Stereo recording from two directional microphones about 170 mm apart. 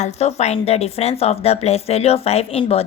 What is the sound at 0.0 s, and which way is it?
A woman's voice, 40° left (ahead or behind).